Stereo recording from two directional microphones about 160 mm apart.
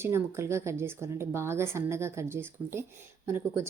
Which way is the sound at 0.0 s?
15° right (ahead or behind).